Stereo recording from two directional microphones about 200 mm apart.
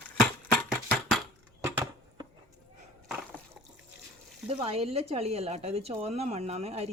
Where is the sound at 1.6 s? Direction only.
15° right (ahead or behind).